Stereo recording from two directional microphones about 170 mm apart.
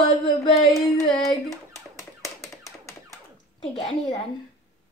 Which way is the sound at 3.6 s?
5° left (ahead or behind).